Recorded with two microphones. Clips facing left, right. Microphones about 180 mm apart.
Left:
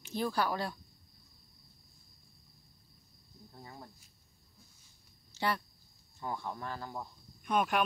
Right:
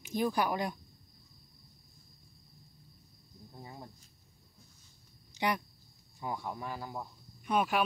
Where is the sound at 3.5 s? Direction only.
15° right (ahead or behind).